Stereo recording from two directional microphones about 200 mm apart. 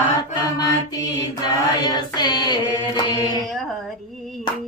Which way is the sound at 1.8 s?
20° left (ahead or behind).